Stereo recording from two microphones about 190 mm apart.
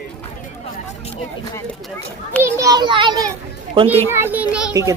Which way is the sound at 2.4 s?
15° right (ahead or behind).